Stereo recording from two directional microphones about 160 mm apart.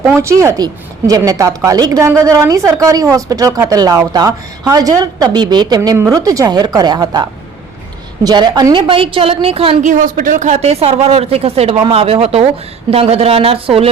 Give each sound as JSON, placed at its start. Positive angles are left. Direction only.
{"t": 0.0, "sound": "speech", "side_deg": -15}
{"t": 9.8, "sound": "speech", "side_deg": -55}